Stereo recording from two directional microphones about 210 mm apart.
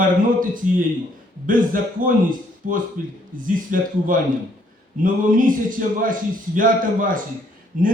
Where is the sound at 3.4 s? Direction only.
40° right (ahead or behind).